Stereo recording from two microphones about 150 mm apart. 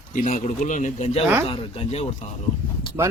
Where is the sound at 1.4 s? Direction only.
35° left (ahead or behind).